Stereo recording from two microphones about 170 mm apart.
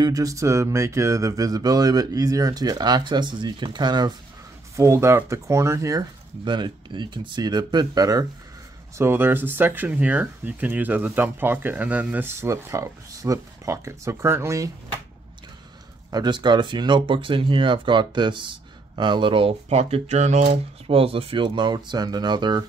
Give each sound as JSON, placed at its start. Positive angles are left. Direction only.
{"t": 0.0, "sound": "speech", "side_deg": -20}
{"t": 16.1, "sound": "speech", "side_deg": -25}